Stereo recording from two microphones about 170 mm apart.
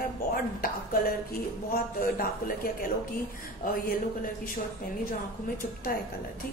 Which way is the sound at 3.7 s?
55° left (ahead or behind).